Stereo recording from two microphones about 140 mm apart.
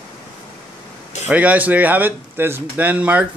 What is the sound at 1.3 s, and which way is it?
Speech, 10° right (ahead or behind).